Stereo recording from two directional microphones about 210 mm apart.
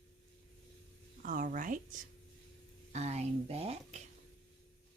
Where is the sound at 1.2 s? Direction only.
40° right (ahead or behind).